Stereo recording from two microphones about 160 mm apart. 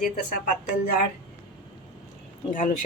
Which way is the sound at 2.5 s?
55° left (ahead or behind).